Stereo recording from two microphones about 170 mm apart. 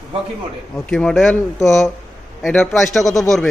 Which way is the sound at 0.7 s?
5° left (ahead or behind).